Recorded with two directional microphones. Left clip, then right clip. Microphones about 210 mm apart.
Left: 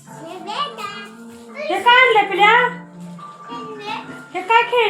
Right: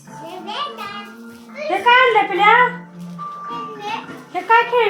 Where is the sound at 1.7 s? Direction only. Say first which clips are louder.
Even; 15° right (ahead or behind).